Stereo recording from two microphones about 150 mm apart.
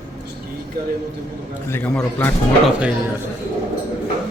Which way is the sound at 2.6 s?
10° right (ahead or behind).